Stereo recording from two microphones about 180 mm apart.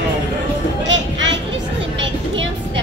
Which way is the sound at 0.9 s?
90° right.